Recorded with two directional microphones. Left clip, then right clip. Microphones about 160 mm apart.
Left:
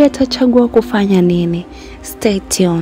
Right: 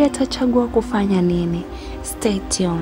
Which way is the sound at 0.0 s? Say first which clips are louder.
Left 7 dB; 30° left (ahead or behind).